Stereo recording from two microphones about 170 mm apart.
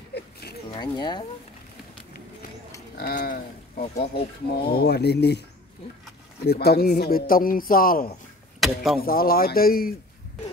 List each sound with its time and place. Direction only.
0.1 s a sound: 70° left (ahead or behind)
0.7 s speech: 25° left (ahead or behind)
3.0 s speech: 65° left (ahead or behind)
6.4 s a man's voice: 70° left (ahead or behind)
8.5 s speech: centre (ahead or behind)
9.0 s a man's voice: 60° left (ahead or behind)